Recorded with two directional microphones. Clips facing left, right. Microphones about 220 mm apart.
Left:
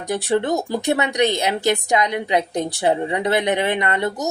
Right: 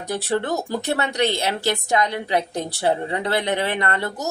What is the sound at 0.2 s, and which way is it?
A woman's voice, 15° left (ahead or behind).